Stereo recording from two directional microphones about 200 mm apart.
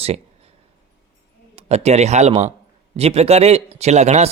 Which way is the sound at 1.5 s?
30° right (ahead or behind).